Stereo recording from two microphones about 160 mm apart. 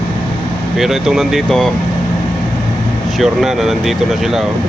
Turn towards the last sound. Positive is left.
turn(degrees=0)  # may be behind; listen again after turning